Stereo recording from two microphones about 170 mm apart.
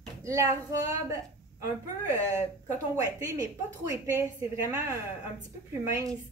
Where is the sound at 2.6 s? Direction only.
20° right (ahead or behind).